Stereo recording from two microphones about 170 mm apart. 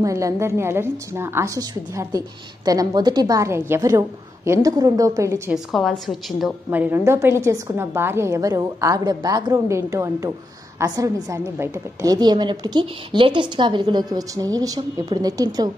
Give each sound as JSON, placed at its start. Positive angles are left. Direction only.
{"t": 0.0, "sound": "a woman's voice", "side_deg": -20}
{"t": 5.5, "sound": "a woman's voice", "side_deg": 0}